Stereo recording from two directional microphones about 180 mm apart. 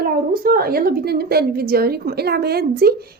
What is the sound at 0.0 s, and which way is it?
A woman's voice, 55° right (ahead or behind).